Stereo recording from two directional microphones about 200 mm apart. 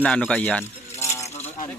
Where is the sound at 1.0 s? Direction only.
15° left (ahead or behind).